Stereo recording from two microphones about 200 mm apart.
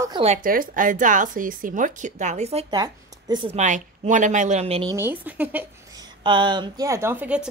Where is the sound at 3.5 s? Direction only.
35° right (ahead or behind).